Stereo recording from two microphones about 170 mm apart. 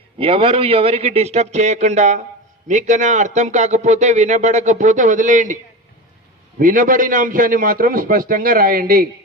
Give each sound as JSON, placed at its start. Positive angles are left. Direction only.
{"t": 0.2, "sound": "a man's voice", "side_deg": -35}
{"t": 6.6, "sound": "a man's voice", "side_deg": -55}